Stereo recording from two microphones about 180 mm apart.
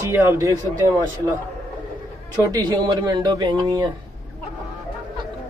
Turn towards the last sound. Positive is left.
turn(degrees=-20)  # may be behind; listen again after turning